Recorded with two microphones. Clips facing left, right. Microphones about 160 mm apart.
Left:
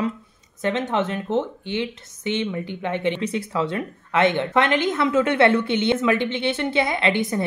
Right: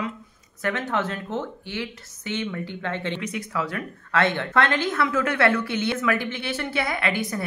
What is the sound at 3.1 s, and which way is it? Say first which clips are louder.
A woman's voice: left 4 dB; 30° left (ahead or behind).